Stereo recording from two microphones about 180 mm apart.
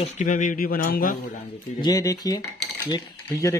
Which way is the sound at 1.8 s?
20° left (ahead or behind).